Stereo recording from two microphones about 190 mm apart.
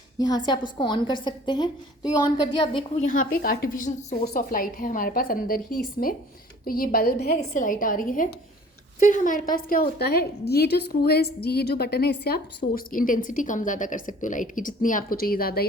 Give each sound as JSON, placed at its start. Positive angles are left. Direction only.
{"t": 0.2, "sound": "a woman's voice", "side_deg": 20}
{"t": 3.0, "sound": "a woman's voice", "side_deg": 45}